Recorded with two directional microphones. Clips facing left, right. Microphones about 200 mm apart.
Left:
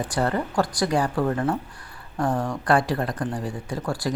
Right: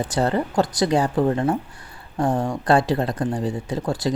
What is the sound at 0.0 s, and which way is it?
Speech, 25° right (ahead or behind).